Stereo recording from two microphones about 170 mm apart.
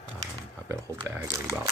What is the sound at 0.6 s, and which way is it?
Speech, 20° right (ahead or behind).